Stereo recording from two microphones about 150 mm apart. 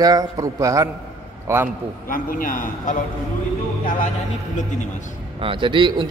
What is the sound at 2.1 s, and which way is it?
Speech, 70° left (ahead or behind).